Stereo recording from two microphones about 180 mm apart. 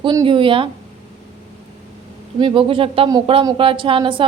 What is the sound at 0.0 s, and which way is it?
Speech, 25° right (ahead or behind).